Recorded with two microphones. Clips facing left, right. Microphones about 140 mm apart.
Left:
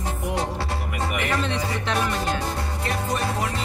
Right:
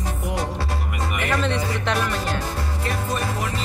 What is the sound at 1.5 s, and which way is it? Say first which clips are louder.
Music: right 1 dB; 20° left (ahead or behind).